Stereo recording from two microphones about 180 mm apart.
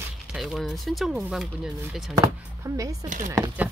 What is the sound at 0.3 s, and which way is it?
Speech, centre (ahead or behind).